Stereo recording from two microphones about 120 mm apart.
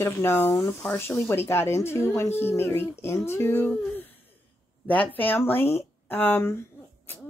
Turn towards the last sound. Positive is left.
turn(degrees=15)  # may be behind; listen again after turning